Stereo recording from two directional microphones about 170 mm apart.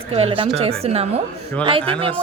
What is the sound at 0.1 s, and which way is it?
Speech, 35° right (ahead or behind).